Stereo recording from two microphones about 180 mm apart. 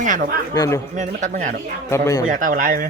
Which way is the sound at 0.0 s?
50° right (ahead or behind).